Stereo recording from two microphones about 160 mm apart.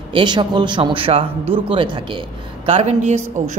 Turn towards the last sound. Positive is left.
turn(degrees=-45)  # may be behind; listen again after turning